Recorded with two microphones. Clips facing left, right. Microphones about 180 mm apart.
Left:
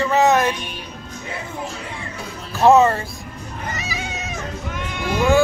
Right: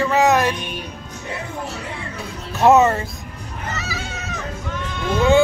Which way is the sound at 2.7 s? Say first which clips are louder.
Even; 20° right (ahead or behind).